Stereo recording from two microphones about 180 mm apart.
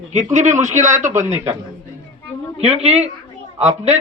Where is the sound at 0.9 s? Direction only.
15° right (ahead or behind).